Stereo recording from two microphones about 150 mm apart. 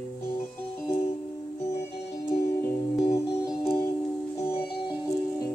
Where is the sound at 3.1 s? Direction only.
20° left (ahead or behind).